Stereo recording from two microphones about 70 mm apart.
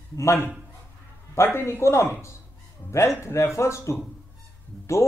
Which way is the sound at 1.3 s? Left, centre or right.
Left.